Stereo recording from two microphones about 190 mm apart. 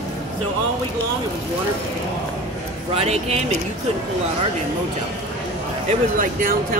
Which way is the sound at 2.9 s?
30° right (ahead or behind).